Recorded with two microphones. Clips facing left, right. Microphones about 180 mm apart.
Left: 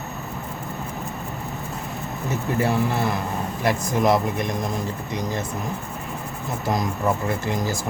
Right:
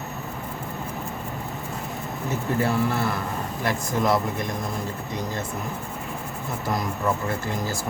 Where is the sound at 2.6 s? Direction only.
20° left (ahead or behind).